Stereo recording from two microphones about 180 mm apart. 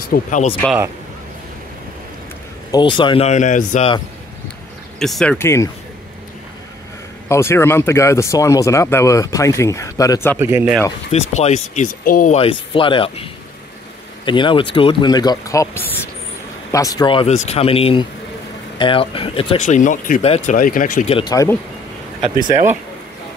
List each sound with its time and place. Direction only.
0.1 s speech: 45° left (ahead or behind)
2.7 s speech: 25° left (ahead or behind); by 3.9 s 40° left (ahead or behind)
4.9 s speech: centre (ahead or behind)
7.2 s speech: 15° left (ahead or behind)
10.4 s speech: 10° right (ahead or behind)
11.1 s speech: 35° left (ahead or behind)
12.4 s speech: 30° left (ahead or behind)
20.5 s speech: 50° left (ahead or behind)
21.1 s speech: 30° left (ahead or behind)